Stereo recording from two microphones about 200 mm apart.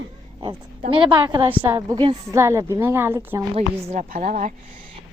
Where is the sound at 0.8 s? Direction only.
25° right (ahead or behind).